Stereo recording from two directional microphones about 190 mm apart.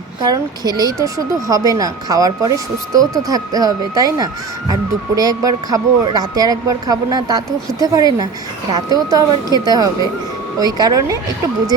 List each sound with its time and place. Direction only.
0.2 s speech: 20° right (ahead or behind)